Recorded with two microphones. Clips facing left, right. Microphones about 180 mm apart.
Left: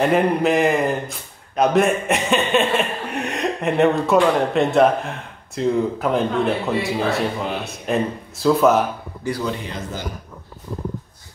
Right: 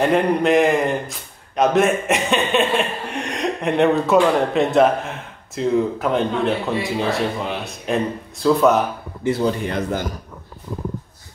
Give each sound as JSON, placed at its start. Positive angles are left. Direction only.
{"t": 0.0, "sound": "a man's voice", "side_deg": 0}
{"t": 9.2, "sound": "speech", "side_deg": -25}
{"t": 9.7, "sound": "speech", "side_deg": -60}